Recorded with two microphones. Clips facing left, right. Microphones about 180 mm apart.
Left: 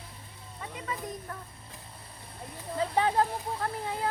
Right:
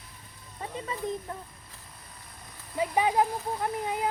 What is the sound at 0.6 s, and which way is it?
Speech, 30° right (ahead or behind).